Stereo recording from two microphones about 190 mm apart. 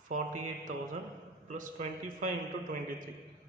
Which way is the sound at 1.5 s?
40° right (ahead or behind).